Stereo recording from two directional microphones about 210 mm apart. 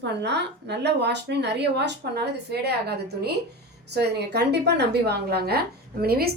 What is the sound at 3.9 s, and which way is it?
A woman's voice, 50° right (ahead or behind).